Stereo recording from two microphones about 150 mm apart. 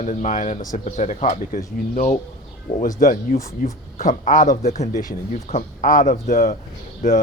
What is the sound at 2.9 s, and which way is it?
Speech, 80° left.